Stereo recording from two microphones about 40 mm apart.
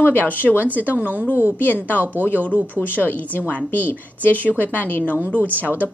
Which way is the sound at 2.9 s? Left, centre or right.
Left.